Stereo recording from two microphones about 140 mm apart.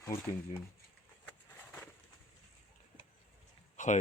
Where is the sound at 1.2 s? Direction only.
10° left (ahead or behind).